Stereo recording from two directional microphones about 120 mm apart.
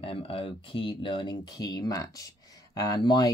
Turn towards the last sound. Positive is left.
turn(degrees=35)  # may be behind; listen again after turning